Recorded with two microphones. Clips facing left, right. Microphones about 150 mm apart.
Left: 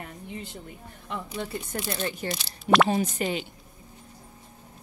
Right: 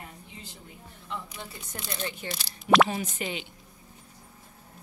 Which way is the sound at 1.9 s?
45° left (ahead or behind).